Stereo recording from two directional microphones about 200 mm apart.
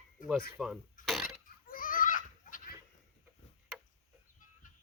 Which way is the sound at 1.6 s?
45° left (ahead or behind).